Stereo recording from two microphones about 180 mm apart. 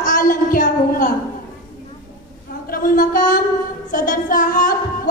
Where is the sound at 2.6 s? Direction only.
50° left (ahead or behind).